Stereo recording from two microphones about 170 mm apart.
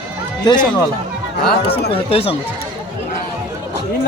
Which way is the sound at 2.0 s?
35° left (ahead or behind).